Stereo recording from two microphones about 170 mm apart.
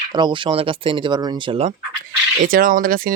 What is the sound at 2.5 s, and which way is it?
Speech, 55° right (ahead or behind).